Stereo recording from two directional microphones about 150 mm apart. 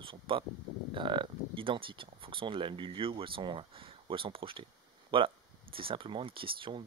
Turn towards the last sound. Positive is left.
turn(degrees=-35)  # may be behind; listen again after turning